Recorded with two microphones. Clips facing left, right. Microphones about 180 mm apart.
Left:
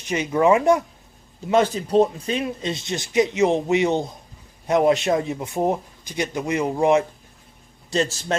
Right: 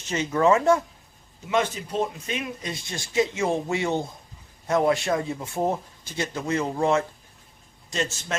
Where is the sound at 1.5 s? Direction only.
35° left (ahead or behind); by 7.0 s 15° left (ahead or behind).